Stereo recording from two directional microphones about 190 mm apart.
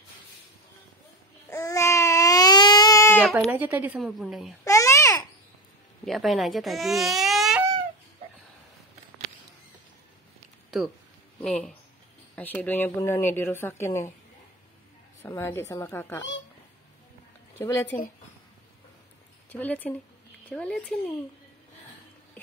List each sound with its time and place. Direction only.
1.5 s baby cry: 15° left (ahead or behind)
3.2 s a woman's voice: centre (ahead or behind)
4.6 s babbling: 15° left (ahead or behind)
6.0 s speech: centre (ahead or behind)
11.4 s a woman's voice: 5° left (ahead or behind)
15.2 s a woman's voice: 10° left (ahead or behind)
17.6 s speech: 15° left (ahead or behind)
19.5 s a woman's voice: 10° left (ahead or behind)